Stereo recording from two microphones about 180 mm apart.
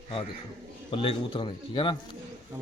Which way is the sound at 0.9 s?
30° left (ahead or behind).